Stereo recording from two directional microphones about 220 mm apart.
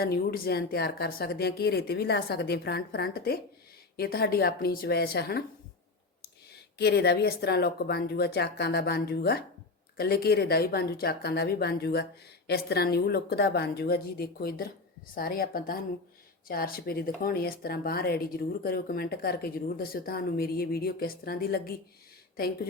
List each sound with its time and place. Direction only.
0.0 s speech: 45° left (ahead or behind)
6.5 s speech: 45° left (ahead or behind)